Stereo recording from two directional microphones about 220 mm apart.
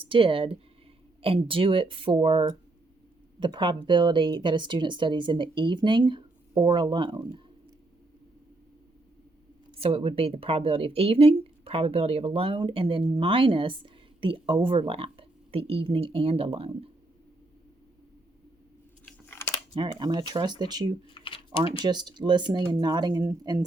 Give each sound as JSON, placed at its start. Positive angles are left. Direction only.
{"t": 0.0, "sound": "speech", "side_deg": -25}
{"t": 9.8, "sound": "speech", "side_deg": -25}
{"t": 19.0, "sound": "a sound", "side_deg": 10}
{"t": 19.7, "sound": "speech", "side_deg": -20}
{"t": 21.1, "sound": "typing", "side_deg": 25}
{"t": 21.8, "sound": "speech", "side_deg": -20}